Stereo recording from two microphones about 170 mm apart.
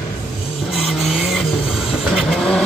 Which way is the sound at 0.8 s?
Centre (ahead or behind).